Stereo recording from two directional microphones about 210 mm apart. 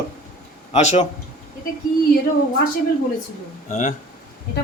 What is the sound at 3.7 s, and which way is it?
Speech, 35° left (ahead or behind).